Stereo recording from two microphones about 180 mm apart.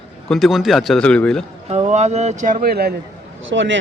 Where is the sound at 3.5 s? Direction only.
90° right.